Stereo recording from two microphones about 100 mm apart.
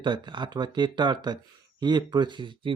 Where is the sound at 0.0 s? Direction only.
50° right (ahead or behind).